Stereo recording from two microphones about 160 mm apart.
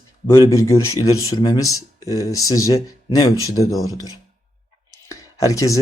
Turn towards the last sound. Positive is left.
turn(degrees=20)  # may be behind; listen again after turning